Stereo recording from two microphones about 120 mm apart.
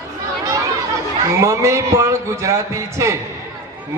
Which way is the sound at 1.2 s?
25° right (ahead or behind).